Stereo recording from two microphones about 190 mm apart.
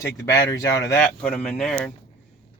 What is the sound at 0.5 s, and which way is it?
Speech, 20° left (ahead or behind).